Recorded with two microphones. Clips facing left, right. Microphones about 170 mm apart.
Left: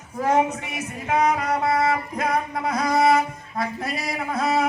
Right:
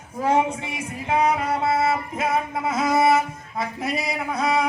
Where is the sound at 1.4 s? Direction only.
5° right (ahead or behind).